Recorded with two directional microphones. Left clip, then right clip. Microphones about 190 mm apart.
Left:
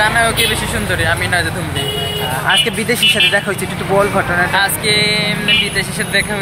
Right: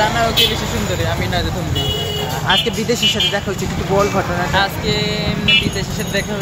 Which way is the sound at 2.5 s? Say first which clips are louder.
Left 2 dB; 5° left (ahead or behind).